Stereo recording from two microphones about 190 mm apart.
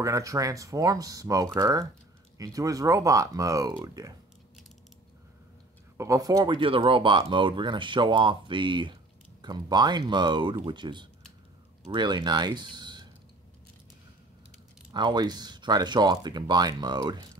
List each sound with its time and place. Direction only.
0.0 s speech: 15° right (ahead or behind)
5.9 s speech: 15° right (ahead or behind)
14.9 s speech: 25° right (ahead or behind)